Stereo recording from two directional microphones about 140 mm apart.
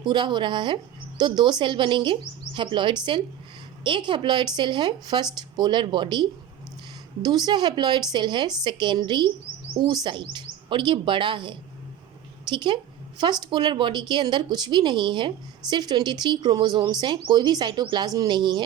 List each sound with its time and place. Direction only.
0.0 s a woman's voice: 35° right (ahead or behind)